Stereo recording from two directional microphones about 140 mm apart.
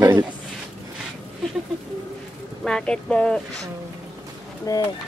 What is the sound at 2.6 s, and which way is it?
Speech, 5° left (ahead or behind).